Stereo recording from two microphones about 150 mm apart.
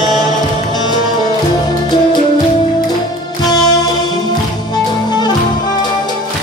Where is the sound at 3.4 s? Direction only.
25° left (ahead or behind).